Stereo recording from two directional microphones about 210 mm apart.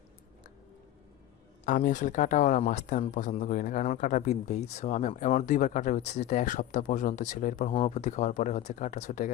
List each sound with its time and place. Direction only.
1.6 s speech: 40° left (ahead or behind)